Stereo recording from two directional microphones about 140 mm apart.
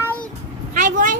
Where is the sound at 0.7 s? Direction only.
70° right (ahead or behind).